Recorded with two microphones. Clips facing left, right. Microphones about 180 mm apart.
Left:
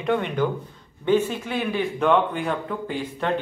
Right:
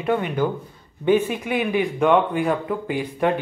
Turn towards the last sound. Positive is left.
turn(degrees=-15)  # may be behind; listen again after turning